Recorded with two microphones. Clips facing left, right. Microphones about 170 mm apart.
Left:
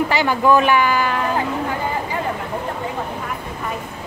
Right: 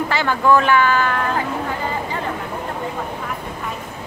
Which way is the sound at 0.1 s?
15° left (ahead or behind).